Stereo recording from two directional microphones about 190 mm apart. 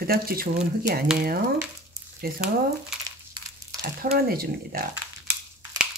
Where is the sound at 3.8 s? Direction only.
55° right (ahead or behind).